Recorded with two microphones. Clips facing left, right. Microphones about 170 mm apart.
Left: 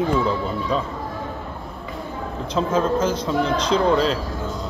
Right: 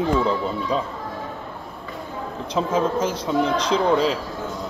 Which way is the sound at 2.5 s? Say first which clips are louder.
Left 1 dB; 10° right (ahead or behind).